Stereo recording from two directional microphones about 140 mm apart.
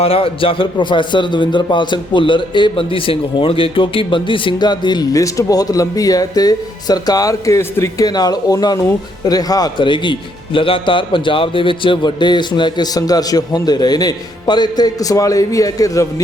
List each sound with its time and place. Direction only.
0.0 s a man's voice: 40° left (ahead or behind); by 16.2 s 25° left (ahead or behind)